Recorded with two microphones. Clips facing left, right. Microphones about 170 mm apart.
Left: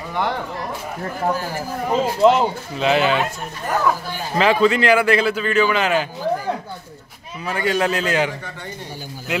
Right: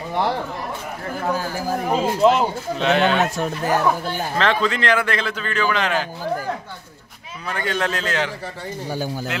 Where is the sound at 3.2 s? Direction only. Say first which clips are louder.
Right 4 dB; 90° right.